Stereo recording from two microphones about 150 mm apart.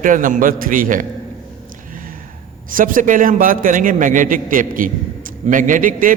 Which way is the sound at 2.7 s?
65° right (ahead or behind).